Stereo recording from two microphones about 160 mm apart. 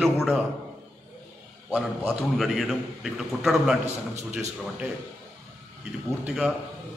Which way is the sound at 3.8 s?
45° right (ahead or behind).